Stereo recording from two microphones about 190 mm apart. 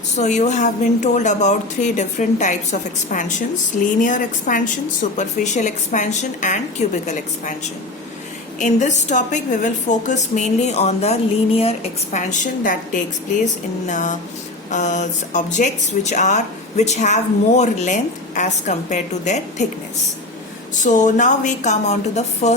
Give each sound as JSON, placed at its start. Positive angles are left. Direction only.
{"t": 0.2, "sound": "speech", "side_deg": 40}
{"t": 4.0, "sound": "a woman's voice", "side_deg": 45}
{"t": 8.5, "sound": "speech", "side_deg": 40}
{"t": 20.8, "sound": "speech", "side_deg": 40}